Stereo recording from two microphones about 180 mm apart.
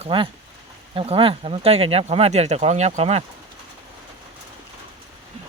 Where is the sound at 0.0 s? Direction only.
30° right (ahead or behind).